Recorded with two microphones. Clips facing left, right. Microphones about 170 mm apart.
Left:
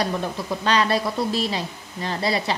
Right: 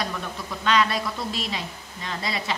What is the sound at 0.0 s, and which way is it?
A woman's voice, 35° left (ahead or behind).